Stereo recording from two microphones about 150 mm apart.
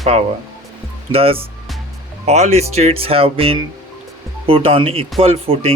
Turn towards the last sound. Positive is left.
turn(degrees=-40)  # may be behind; listen again after turning